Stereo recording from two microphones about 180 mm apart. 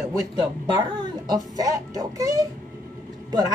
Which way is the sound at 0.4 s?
25° right (ahead or behind).